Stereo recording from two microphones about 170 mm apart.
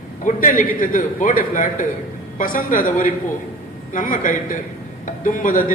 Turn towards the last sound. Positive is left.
turn(degrees=50)  # may be behind; listen again after turning